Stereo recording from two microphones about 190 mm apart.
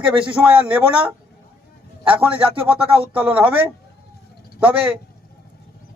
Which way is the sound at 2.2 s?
10° right (ahead or behind).